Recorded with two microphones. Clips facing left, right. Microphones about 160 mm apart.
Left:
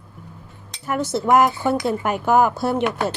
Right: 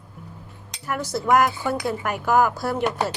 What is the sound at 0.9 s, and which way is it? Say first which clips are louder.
Speech: left 3 dB; 25° left (ahead or behind).